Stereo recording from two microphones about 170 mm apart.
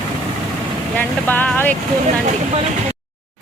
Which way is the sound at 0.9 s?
10° left (ahead or behind).